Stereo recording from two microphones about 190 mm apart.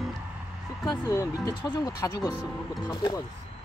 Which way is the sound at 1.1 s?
15° left (ahead or behind).